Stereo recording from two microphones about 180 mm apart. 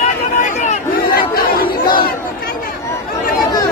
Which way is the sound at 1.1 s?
55° left (ahead or behind).